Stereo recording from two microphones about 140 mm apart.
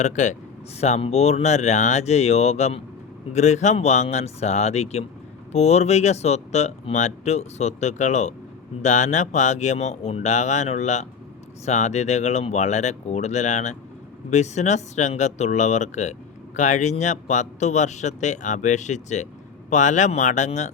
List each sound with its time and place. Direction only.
0.0 s speech: 60° left (ahead or behind)